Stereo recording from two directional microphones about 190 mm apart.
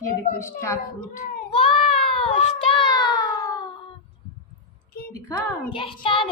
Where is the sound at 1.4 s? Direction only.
30° left (ahead or behind).